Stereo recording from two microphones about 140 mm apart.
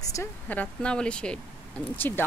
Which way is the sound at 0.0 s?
25° left (ahead or behind).